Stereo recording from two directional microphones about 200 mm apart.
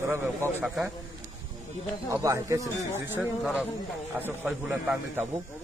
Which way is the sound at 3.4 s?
5° right (ahead or behind).